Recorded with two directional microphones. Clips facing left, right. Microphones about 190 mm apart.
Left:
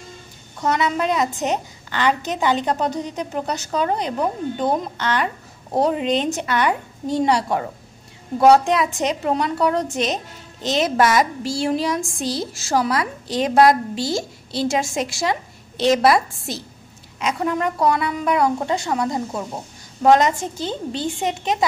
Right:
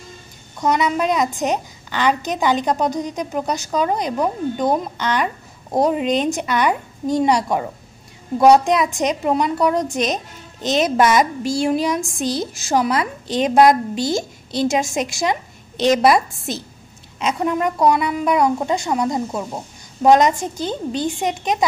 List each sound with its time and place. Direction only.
0.6 s a woman's voice: 15° right (ahead or behind)